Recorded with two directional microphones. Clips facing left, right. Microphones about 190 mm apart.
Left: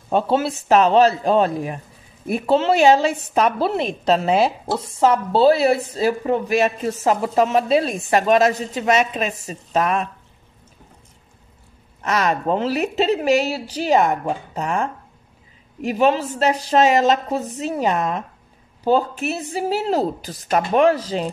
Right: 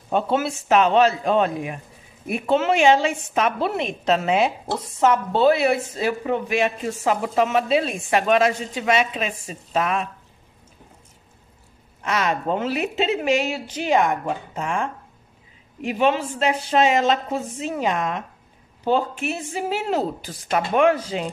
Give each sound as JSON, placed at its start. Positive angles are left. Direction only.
{"t": 0.1, "sound": "a woman's voice", "side_deg": 35}
{"t": 12.0, "sound": "a woman's voice", "side_deg": 40}